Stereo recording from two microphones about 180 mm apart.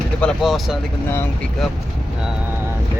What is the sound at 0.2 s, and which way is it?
Speech, centre (ahead or behind).